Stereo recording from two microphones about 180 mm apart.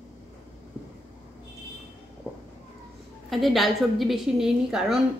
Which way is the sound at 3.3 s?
Centre (ahead or behind).